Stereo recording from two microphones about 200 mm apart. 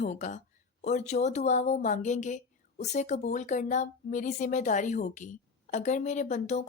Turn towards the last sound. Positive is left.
turn(degrees=35)  # may be behind; listen again after turning